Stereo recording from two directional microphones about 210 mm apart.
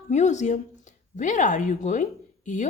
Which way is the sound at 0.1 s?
35° left (ahead or behind).